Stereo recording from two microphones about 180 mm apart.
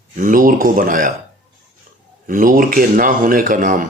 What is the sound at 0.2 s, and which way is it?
Speech, 50° right (ahead or behind).